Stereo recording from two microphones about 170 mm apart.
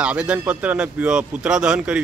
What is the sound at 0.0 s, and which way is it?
Speech, 5° right (ahead or behind).